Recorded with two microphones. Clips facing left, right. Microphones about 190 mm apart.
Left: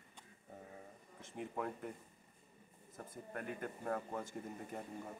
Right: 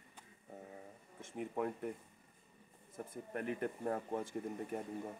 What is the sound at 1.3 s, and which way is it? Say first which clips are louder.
Speech: right 3 dB; 10° right (ahead or behind).